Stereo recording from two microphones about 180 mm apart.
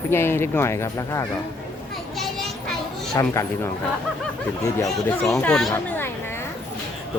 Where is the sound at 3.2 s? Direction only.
15° left (ahead or behind).